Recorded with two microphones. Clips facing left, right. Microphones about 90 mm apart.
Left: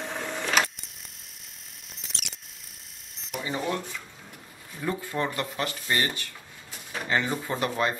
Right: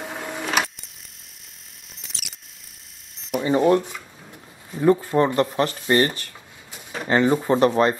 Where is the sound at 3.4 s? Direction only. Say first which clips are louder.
Right 12 dB; 35° right (ahead or behind).